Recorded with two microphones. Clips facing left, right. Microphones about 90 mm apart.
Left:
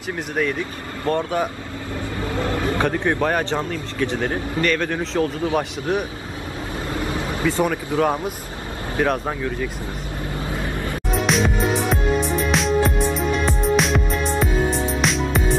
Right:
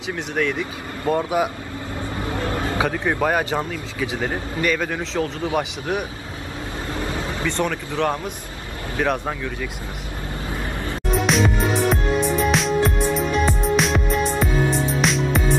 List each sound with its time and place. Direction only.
0.4 s speech: centre (ahead or behind)
1.0 s speech: 10° right (ahead or behind)
2.5 s a sound: 20° right (ahead or behind)
2.8 s speech: centre (ahead or behind)
7.4 s speech: 5° left (ahead or behind)
11.1 s music: centre (ahead or behind)